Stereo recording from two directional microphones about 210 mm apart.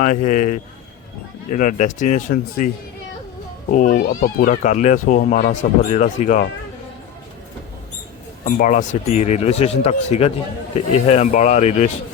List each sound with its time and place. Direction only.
0.0 s speech: 35° left (ahead or behind)
3.7 s speech: 40° left (ahead or behind)
8.4 s speech: 40° left (ahead or behind)